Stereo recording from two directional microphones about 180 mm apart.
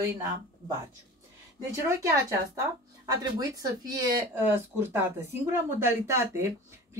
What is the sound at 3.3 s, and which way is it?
Speech, 20° right (ahead or behind).